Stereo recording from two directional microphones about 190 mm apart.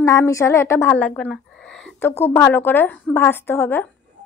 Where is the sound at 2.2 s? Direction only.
10° left (ahead or behind).